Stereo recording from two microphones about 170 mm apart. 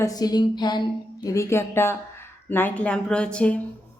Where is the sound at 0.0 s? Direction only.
20° left (ahead or behind); by 3.6 s 5° left (ahead or behind).